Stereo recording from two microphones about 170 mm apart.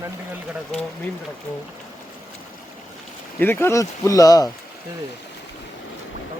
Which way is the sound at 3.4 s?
15° left (ahead or behind).